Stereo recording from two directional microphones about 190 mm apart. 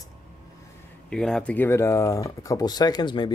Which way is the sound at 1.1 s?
5° left (ahead or behind).